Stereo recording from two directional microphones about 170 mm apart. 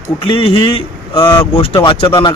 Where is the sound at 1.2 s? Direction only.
25° left (ahead or behind).